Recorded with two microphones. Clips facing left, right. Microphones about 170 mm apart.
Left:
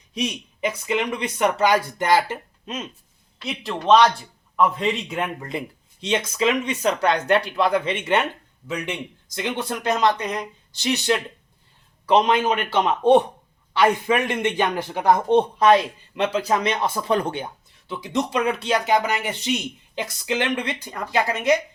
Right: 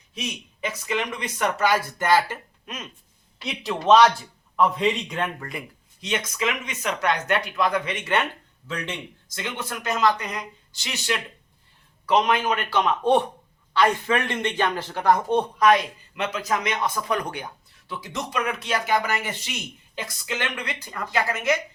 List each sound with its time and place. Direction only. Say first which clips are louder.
0.1 s speech: left 7 dB; 15° left (ahead or behind)
0.7 s speech: left 3 dB; 25° left (ahead or behind)
3.4 s speech: even; centre (ahead or behind)
5.5 s speech: left 6 dB; 25° left (ahead or behind)
8.6 s a man's voice: left 4 dB; 10° left (ahead or behind)
9.4 s speech: left 6 dB; 30° left (ahead or behind)
12.0 s speech: left 3 dB; 30° left (ahead or behind)